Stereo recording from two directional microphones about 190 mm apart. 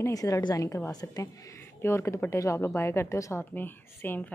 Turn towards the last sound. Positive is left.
turn(degrees=10)  # may be behind; listen again after turning